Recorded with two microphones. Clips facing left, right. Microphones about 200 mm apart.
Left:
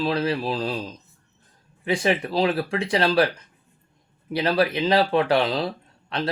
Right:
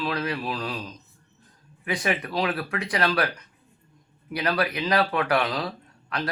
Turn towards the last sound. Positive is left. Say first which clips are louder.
# left 3 dB
turn(degrees=25)  # may be behind; listen again after turning